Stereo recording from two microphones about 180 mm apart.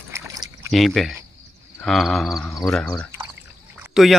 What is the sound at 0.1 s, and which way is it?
Pour, 20° right (ahead or behind).